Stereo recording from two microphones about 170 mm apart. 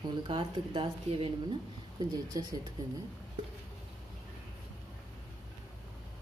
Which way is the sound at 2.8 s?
20° right (ahead or behind).